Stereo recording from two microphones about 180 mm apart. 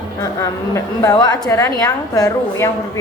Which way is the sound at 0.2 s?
15° left (ahead or behind).